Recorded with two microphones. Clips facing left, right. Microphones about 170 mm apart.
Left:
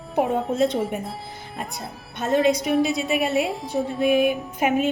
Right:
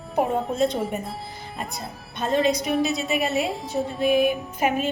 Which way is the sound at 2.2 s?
10° left (ahead or behind).